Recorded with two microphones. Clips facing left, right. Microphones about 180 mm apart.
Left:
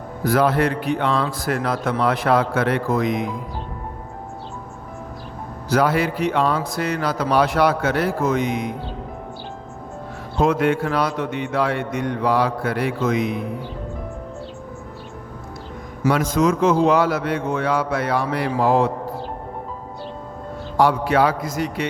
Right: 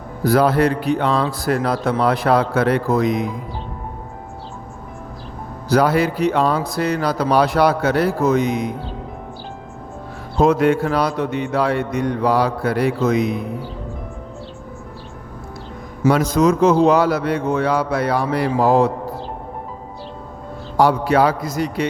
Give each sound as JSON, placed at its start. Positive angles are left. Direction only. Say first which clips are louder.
{"t": 0.3, "sound": "speech", "louder": "right 3 dB", "side_deg": -35}
{"t": 5.6, "sound": "speech", "louder": "right 3 dB", "side_deg": -35}
{"t": 10.3, "sound": "speech", "louder": "right 3 dB", "side_deg": -40}
{"t": 16.0, "sound": "speech", "louder": "right 3 dB", "side_deg": -35}
{"t": 20.7, "sound": "speech", "louder": "right 2 dB", "side_deg": -40}